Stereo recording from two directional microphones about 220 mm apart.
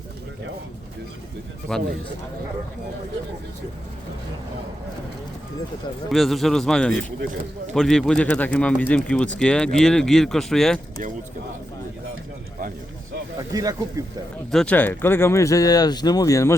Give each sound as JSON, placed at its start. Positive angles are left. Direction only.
{"t": 1.7, "sound": "speech", "side_deg": 5}
{"t": 6.1, "sound": "speech", "side_deg": 0}
{"t": 13.5, "sound": "speech", "side_deg": -15}
{"t": 14.5, "sound": "speech", "side_deg": 5}